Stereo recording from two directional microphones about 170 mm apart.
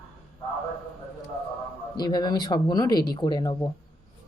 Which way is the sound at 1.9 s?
25° left (ahead or behind).